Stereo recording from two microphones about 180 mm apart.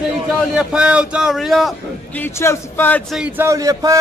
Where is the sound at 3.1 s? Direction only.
10° right (ahead or behind).